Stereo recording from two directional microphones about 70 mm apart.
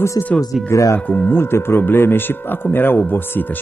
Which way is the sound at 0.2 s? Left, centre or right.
Left.